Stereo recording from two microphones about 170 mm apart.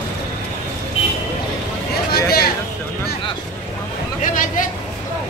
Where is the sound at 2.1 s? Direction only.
65° left (ahead or behind).